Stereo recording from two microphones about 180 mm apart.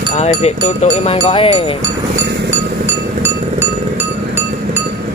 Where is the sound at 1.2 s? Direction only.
30° left (ahead or behind).